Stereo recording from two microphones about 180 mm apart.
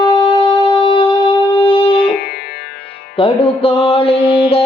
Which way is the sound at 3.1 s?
30° left (ahead or behind).